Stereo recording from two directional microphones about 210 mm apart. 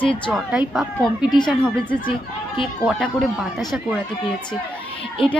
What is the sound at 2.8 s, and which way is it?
Speech, 5° left (ahead or behind).